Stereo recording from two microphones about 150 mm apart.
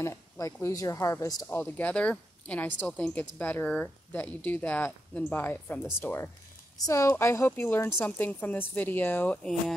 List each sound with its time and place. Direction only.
0.0 s speech: 20° left (ahead or behind); by 9.8 s 5° left (ahead or behind)